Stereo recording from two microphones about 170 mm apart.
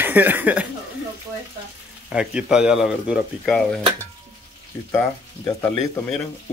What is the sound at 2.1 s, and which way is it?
A man's voice, 5° right (ahead or behind).